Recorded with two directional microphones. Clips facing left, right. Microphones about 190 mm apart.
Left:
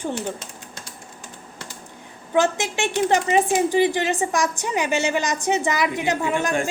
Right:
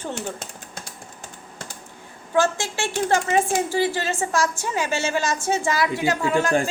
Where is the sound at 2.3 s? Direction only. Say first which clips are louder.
Left 1 dB; 20° left (ahead or behind).